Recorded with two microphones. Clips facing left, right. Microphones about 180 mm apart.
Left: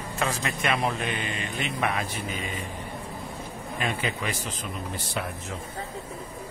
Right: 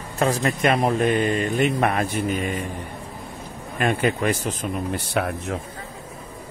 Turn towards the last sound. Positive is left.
turn(degrees=-65)  # may be behind; listen again after turning